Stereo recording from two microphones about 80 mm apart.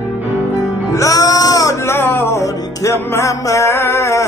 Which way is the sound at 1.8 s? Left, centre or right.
Left.